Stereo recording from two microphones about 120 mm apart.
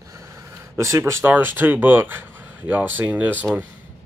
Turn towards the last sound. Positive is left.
turn(degrees=-15)  # may be behind; listen again after turning